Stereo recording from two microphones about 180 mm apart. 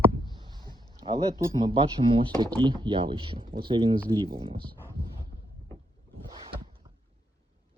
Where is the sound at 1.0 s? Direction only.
25° right (ahead or behind).